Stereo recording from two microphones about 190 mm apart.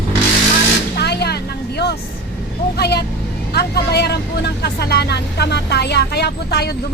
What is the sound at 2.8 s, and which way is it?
Speech, 60° left (ahead or behind).